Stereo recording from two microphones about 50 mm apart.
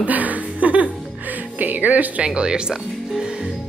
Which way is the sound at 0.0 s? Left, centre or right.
Right.